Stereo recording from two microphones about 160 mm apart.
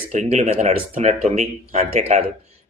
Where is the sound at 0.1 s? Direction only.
45° right (ahead or behind).